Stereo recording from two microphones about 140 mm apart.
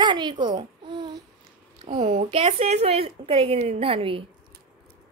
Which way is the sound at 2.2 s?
45° right (ahead or behind).